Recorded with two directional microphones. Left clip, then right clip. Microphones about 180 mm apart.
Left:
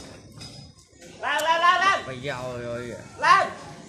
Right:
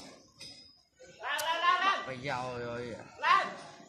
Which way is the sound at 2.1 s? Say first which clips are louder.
Left 5 dB; 40° right (ahead or behind).